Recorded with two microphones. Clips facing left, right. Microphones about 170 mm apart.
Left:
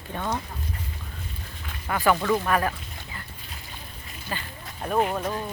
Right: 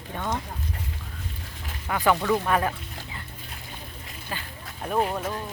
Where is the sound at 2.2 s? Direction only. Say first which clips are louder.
Even; centre (ahead or behind).